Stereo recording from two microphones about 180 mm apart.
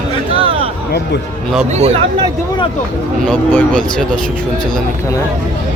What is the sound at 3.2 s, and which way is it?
Speech, 10° left (ahead or behind).